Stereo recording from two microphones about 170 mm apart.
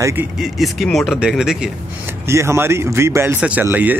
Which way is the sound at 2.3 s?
15° right (ahead or behind).